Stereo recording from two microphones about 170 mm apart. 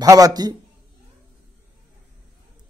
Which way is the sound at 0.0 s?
20° right (ahead or behind).